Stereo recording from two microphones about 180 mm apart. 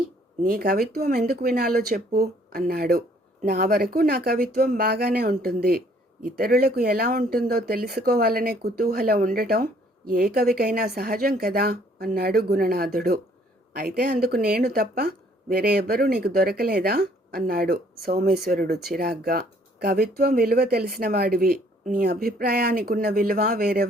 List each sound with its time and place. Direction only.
0.4 s speech: 55° right (ahead or behind)